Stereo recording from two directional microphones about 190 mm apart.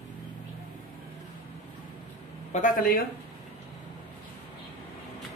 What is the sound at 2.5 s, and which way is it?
Speech, 45° left (ahead or behind).